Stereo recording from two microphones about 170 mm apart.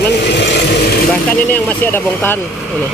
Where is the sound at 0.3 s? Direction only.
90° left.